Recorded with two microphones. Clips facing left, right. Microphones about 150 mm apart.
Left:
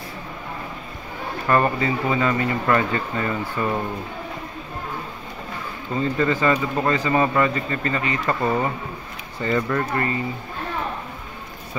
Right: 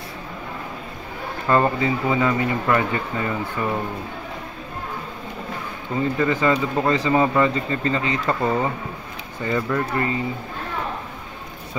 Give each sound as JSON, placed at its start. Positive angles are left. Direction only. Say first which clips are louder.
{"t": 1.5, "sound": "speech", "louder": "right 1 dB", "side_deg": -20}
{"t": 5.9, "sound": "speech", "louder": "even", "side_deg": -15}
{"t": 9.9, "sound": "speech", "louder": "right 1 dB", "side_deg": -20}